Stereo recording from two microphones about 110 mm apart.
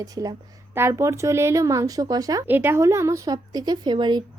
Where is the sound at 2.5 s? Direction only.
20° right (ahead or behind); by 4.2 s 45° right (ahead or behind).